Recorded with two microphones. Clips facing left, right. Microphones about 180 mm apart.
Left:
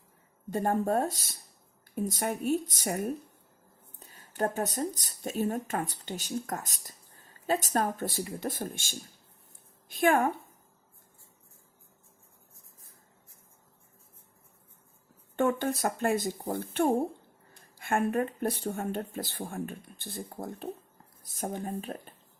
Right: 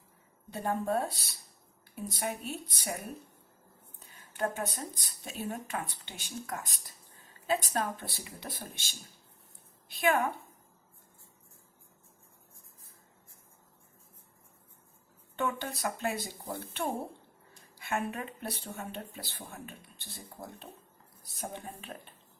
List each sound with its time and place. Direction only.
0.5 s speech: 45° left (ahead or behind)
15.4 s speech: 50° left (ahead or behind)